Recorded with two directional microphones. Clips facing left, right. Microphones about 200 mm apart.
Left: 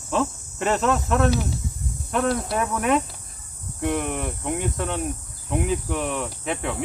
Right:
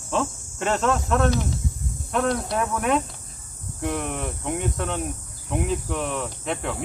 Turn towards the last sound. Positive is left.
turn(degrees=0)  # may be behind; listen again after turning